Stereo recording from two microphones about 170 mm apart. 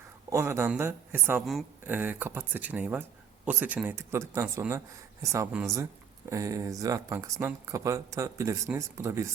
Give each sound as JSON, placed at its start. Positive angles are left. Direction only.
{"t": 0.3, "sound": "speech", "side_deg": -15}
{"t": 1.4, "sound": "speech", "side_deg": 0}
{"t": 1.8, "sound": "speech", "side_deg": -10}